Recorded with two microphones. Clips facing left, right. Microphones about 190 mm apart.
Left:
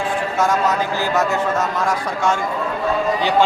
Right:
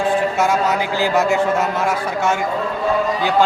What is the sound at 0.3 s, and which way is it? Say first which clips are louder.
A man's voice: right 1 dB; 10° right (ahead or behind).